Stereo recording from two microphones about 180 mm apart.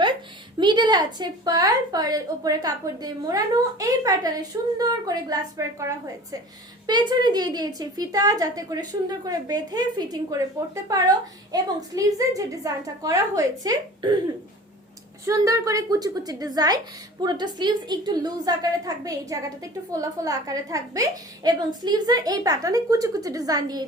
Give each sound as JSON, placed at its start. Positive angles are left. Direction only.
{"t": 0.6, "sound": "a woman's voice", "side_deg": -25}
{"t": 15.3, "sound": "a woman's voice", "side_deg": -20}